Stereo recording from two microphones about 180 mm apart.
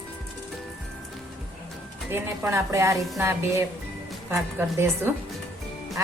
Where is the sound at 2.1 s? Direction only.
15° right (ahead or behind).